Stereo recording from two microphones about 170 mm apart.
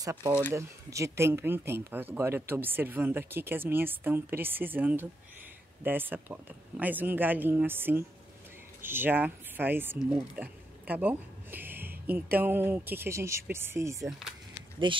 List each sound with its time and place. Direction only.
0.0 s speech: 20° right (ahead or behind)
14.9 s speech: 30° right (ahead or behind)